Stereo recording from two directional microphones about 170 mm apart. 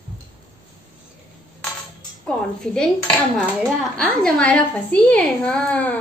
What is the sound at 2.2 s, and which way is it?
Speech, 5° left (ahead or behind).